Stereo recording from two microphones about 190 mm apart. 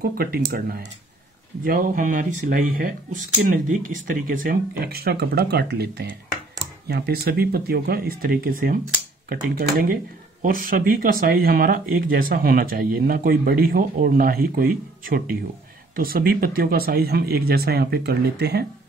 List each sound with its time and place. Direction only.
0.2 s speech: 50° right (ahead or behind)